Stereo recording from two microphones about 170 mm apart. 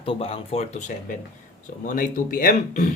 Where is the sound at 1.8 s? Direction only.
55° left (ahead or behind).